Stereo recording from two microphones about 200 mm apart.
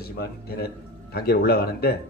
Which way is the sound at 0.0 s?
50° left (ahead or behind).